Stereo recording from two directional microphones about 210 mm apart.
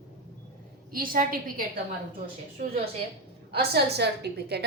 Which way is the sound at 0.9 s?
40° right (ahead or behind).